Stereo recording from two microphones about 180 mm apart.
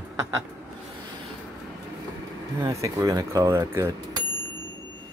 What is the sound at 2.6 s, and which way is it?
Speech, 20° right (ahead or behind).